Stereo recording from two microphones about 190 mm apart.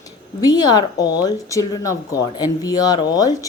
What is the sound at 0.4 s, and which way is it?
A woman's voice, 20° left (ahead or behind).